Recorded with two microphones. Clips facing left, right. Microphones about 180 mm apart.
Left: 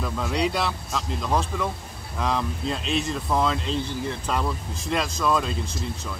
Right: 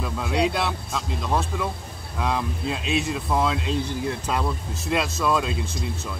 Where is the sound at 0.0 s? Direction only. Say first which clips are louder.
Right 1 dB; 5° right (ahead or behind).